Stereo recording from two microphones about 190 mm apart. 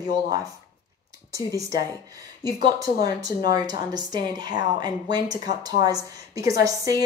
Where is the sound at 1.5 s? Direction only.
15° right (ahead or behind).